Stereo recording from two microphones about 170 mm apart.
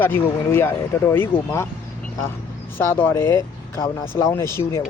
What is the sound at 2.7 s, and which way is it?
Speech, 15° left (ahead or behind).